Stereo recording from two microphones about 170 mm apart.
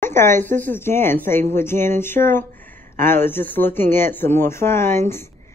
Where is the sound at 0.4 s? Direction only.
10° left (ahead or behind).